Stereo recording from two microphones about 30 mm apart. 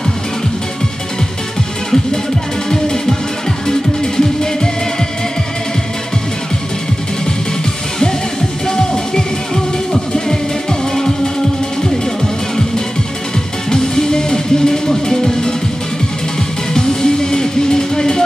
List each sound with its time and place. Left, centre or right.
2.7 s music: centre
8.6 s music: left
13.7 s music: left
16.7 s music: left